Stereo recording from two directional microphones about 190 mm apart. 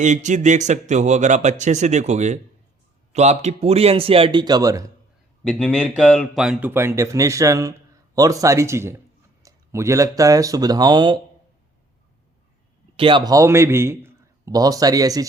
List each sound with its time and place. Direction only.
0.0 s speech: 40° right (ahead or behind); by 4.9 s 20° right (ahead or behind)
5.4 s speech: 5° left (ahead or behind); by 11.2 s 20° right (ahead or behind)
13.0 s speech: 25° right (ahead or behind)